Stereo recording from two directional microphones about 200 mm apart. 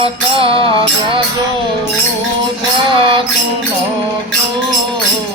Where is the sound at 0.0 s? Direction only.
25° right (ahead or behind).